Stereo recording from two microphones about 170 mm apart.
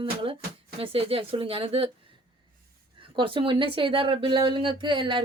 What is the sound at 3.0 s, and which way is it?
Speech, 30° right (ahead or behind).